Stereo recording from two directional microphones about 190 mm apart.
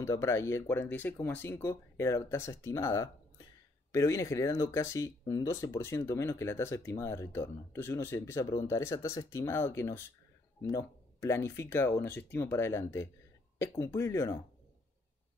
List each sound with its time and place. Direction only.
0.0 s speech: 15° left (ahead or behind)